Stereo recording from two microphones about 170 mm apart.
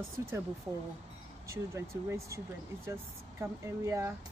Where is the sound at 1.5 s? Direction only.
15° right (ahead or behind).